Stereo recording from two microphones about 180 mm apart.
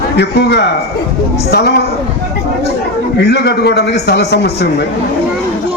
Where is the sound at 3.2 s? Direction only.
65° left (ahead or behind).